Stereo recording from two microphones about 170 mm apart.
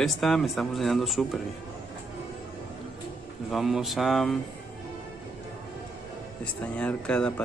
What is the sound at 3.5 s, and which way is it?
Speech, centre (ahead or behind).